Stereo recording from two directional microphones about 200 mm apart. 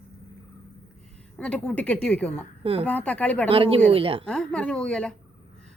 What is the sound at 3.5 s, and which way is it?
Speech, 30° right (ahead or behind).